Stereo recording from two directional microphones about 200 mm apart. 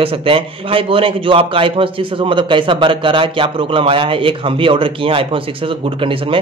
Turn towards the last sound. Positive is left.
turn(degrees=-25)  # may be behind; listen again after turning